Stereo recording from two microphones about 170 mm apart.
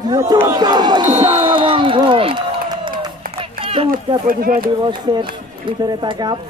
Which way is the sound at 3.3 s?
35° right (ahead or behind).